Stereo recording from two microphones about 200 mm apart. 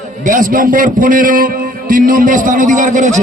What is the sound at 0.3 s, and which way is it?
A man's voice, 40° right (ahead or behind).